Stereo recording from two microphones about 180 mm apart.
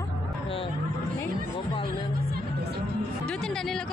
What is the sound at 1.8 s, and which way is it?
Speech, 60° right (ahead or behind).